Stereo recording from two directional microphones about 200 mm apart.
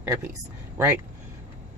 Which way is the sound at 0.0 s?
10° right (ahead or behind).